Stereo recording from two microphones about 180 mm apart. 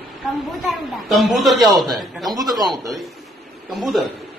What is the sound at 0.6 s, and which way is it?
A woman's voice, centre (ahead or behind).